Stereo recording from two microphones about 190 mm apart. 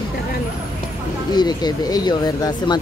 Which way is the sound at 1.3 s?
20° left (ahead or behind).